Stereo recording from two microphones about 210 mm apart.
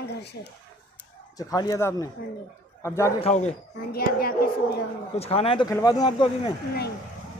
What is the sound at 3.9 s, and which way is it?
Speech, 45° left (ahead or behind).